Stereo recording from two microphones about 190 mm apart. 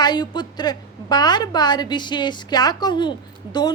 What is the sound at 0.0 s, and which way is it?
A woman's voice, 20° left (ahead or behind).